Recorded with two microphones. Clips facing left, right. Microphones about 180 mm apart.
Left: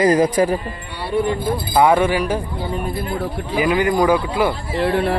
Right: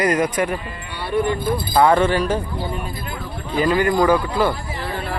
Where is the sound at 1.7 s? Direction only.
10° left (ahead or behind).